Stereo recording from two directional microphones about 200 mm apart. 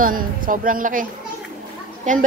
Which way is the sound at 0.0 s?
45° right (ahead or behind).